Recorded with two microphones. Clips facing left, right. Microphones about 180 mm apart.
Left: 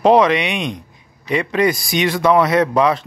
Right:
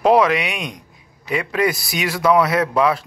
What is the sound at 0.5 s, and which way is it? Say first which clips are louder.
Speech: left 6 dB; 25° left (ahead or behind).